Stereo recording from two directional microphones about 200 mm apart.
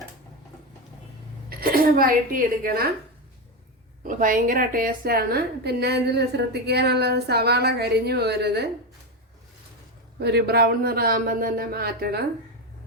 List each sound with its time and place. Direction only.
1.5 s speech: 50° right (ahead or behind)
4.0 s a woman's voice: 40° right (ahead or behind)
10.2 s a man's voice: 55° right (ahead or behind)